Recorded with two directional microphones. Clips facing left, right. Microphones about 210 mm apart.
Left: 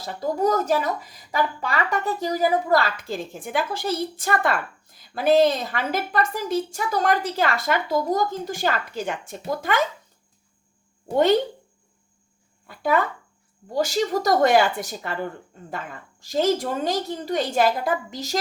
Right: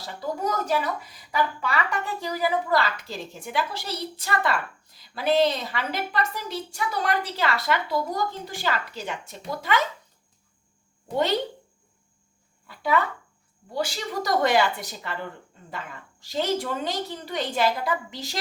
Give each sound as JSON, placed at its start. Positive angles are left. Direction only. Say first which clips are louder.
{"t": 0.2, "sound": "a woman's voice", "louder": "left 6 dB", "side_deg": 40}
{"t": 12.6, "sound": "a woman's voice", "louder": "left 2 dB", "side_deg": 45}